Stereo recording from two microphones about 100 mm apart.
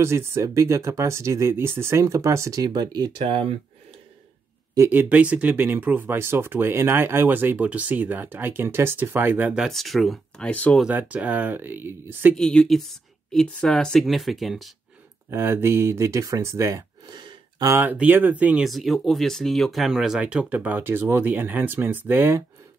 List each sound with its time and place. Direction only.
0.0 s speech: 25° right (ahead or behind)
2.6 s speech: 45° right (ahead or behind); by 3.5 s 65° right (ahead or behind)
4.7 s speech: 20° right (ahead or behind)
9.6 s speech: centre (ahead or behind)
10.9 s speech: 15° right (ahead or behind)
12.4 s speech: 5° left (ahead or behind)
15.2 s speech: 25° right (ahead or behind)
17.1 s gasp: 50° right (ahead or behind)
17.6 s speech: 20° right (ahead or behind)
18.7 s speech: centre (ahead or behind); by 22.4 s 20° right (ahead or behind)